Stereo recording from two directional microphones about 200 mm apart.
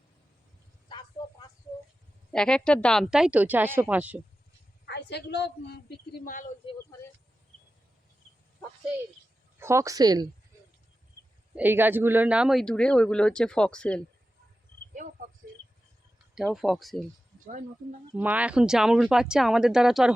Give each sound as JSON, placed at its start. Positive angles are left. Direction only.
{"t": 0.9, "sound": "a sound", "side_deg": 25}
{"t": 2.3, "sound": "speech", "side_deg": 5}
{"t": 4.9, "sound": "a woman's voice", "side_deg": 55}
{"t": 6.2, "sound": "speech", "side_deg": 40}
{"t": 9.6, "sound": "speech", "side_deg": -15}
{"t": 11.5, "sound": "speech", "side_deg": -10}
{"t": 16.3, "sound": "speech", "side_deg": 0}
{"t": 18.2, "sound": "speech", "side_deg": -5}